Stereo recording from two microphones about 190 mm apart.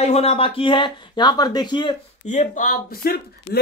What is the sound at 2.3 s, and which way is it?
Speech, 40° left (ahead or behind).